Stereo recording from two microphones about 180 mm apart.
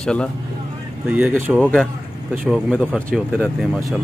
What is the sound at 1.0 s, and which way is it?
Speech, 10° right (ahead or behind).